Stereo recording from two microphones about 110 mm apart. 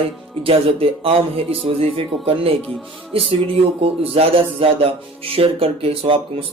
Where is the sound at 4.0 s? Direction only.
60° right (ahead or behind).